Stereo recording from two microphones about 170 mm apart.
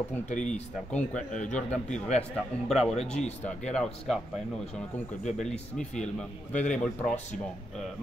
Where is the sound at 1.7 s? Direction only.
40° left (ahead or behind).